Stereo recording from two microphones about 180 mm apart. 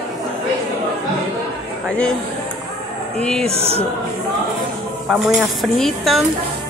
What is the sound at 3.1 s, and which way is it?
Speech, 5° left (ahead or behind).